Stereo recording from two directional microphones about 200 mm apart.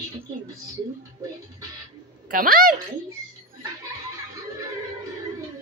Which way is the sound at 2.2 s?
45° right (ahead or behind).